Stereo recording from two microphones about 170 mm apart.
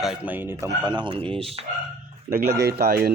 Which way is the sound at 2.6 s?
65° right (ahead or behind).